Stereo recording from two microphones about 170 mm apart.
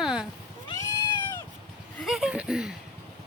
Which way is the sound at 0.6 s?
20° left (ahead or behind).